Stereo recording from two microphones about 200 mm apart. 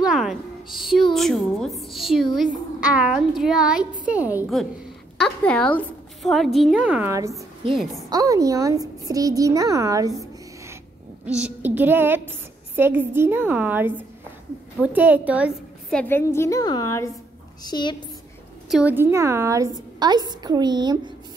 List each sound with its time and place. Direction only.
0.0 s a sound: centre (ahead or behind)
1.1 s a woman's voice: centre (ahead or behind); by 7.4 s 15° right (ahead or behind)
7.7 s a woman's voice: centre (ahead or behind)
8.1 s a woman's voice: 20° right (ahead or behind)
11.2 s a woman's voice: 5° right (ahead or behind)
15.9 s a woman's voice: 10° left (ahead or behind)
18.7 s a woman's voice: 5° right (ahead or behind)